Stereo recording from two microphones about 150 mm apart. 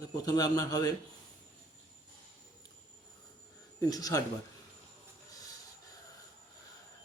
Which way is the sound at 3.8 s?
25° left (ahead or behind).